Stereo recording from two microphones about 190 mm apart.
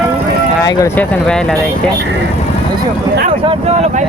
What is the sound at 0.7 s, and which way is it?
Speech, 15° left (ahead or behind).